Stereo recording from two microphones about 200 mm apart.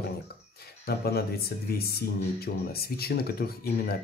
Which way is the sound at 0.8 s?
50° left (ahead or behind).